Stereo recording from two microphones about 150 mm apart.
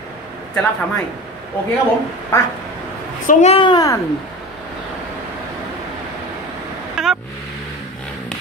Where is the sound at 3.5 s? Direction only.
30° left (ahead or behind).